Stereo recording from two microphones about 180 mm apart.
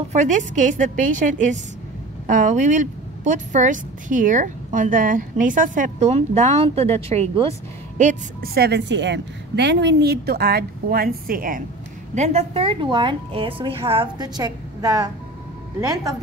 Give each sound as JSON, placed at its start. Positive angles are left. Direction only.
{"t": 0.1, "sound": "a woman's voice", "side_deg": -45}
{"t": 8.5, "sound": "a woman's voice", "side_deg": -70}
{"t": 12.2, "sound": "a woman's voice", "side_deg": -35}